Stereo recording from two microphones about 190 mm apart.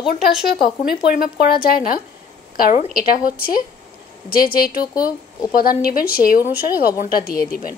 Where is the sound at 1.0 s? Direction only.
55° left (ahead or behind).